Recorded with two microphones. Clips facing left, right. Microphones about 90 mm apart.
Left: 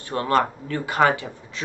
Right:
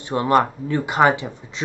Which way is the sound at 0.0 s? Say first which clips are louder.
Right 3 dB; 20° right (ahead or behind).